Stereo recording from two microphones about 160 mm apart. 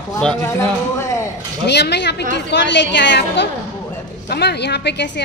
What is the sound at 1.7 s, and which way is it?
A woman's voice, 90° left.